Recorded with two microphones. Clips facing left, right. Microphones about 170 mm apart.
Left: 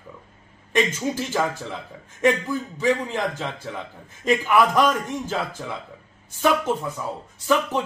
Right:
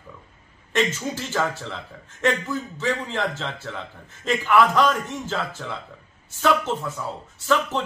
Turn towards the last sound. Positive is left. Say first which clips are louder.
# left 1 dB
turn(degrees=15)  # may be behind; listen again after turning